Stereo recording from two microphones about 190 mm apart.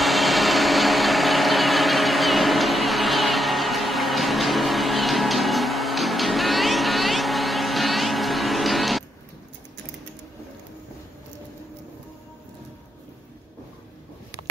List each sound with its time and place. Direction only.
0.0 s vehicle: centre (ahead or behind)